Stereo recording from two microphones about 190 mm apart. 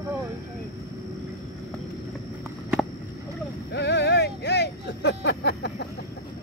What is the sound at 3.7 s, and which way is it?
Vehicle, 65° left (ahead or behind).